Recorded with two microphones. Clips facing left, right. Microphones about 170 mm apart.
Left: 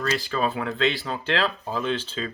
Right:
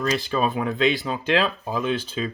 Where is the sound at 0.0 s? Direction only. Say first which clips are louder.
Right 2 dB; 20° right (ahead or behind).